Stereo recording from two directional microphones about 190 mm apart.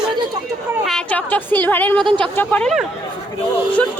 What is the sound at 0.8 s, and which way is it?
A woman's voice, 5° left (ahead or behind).